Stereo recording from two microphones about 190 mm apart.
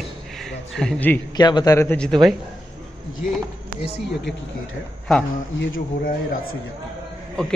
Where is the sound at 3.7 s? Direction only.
45° right (ahead or behind).